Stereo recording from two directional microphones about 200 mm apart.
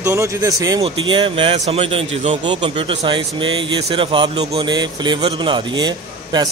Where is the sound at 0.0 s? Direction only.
15° right (ahead or behind).